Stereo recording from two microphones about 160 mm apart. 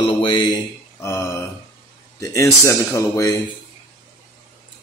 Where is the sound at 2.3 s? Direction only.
20° left (ahead or behind).